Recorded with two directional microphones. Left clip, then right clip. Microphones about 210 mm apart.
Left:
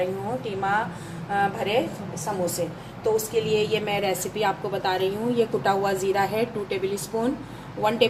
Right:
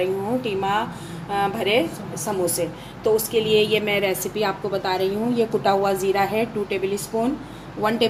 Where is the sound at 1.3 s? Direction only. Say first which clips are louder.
Right 3 dB; 20° right (ahead or behind).